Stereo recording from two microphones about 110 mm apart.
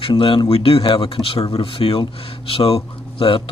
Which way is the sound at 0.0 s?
50° left (ahead or behind).